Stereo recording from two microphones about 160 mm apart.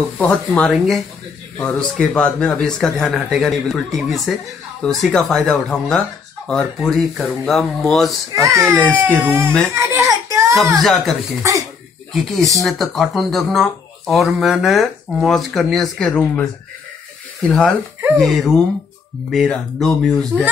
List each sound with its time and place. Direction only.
0.2 s speech: 5° left (ahead or behind)
8.3 s a child's voice: 20° right (ahead or behind)
8.5 s speech: 5° left (ahead or behind)
8.8 s speech: 10° right (ahead or behind)
9.8 s a sound: 20° right (ahead or behind)
10.8 s speech: centre (ahead or behind)
12.4 s a child's voice: 20° right (ahead or behind)
12.6 s speech: centre (ahead or behind)